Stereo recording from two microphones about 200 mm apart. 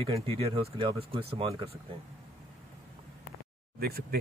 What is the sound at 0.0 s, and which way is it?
Speech, 30° right (ahead or behind).